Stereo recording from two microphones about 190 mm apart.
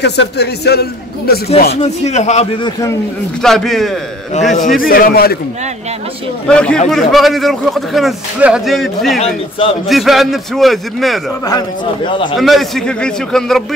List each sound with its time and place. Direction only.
0.0 s a man's voice: 60° left (ahead or behind)
1.7 s speech: 35° left (ahead or behind)
3.4 s a man's voice: centre (ahead or behind)
4.6 s a man's voice: 45° left (ahead or behind)
6.4 s a man's voice: 5° left (ahead or behind)
9.2 s a man's voice: 30° left (ahead or behind)
9.8 s a man's voice: centre (ahead or behind)
11.4 s a man's voice: 20° left (ahead or behind)
12.4 s a man's voice: centre (ahead or behind)